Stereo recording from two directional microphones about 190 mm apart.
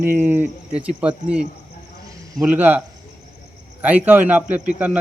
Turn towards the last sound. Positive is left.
turn(degrees=-5)  # may be behind; listen again after turning